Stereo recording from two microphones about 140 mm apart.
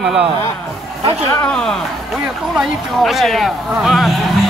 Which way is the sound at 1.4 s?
5° left (ahead or behind).